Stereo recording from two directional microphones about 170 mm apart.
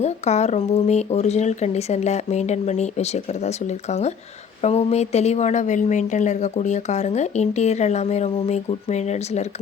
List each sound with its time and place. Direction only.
0.0 s a woman's voice: 40° left (ahead or behind)